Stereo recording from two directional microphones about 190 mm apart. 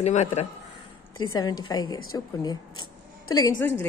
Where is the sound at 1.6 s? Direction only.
20° left (ahead or behind).